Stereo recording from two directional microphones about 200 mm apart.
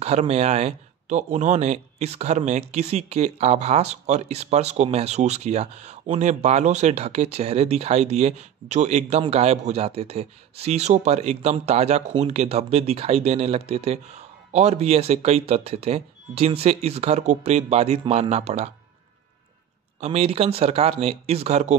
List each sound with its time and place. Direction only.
0.0 s speech: 35° right (ahead or behind)
20.0 s speech: 30° right (ahead or behind)